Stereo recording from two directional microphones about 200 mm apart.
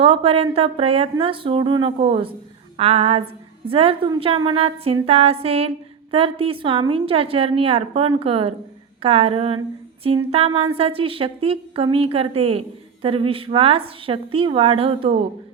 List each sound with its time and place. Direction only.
0.0 s a woman's voice: 25° right (ahead or behind)